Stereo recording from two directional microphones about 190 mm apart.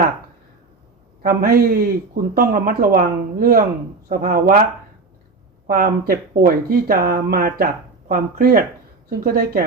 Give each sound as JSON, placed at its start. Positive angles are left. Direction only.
{"t": 1.2, "sound": "speech", "side_deg": -50}
{"t": 5.6, "sound": "speech", "side_deg": -50}